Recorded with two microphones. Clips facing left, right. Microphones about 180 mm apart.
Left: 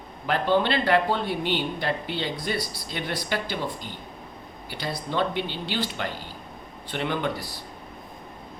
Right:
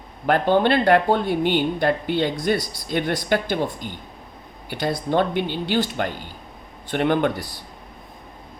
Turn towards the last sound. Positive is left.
turn(degrees=-55)  # may be behind; listen again after turning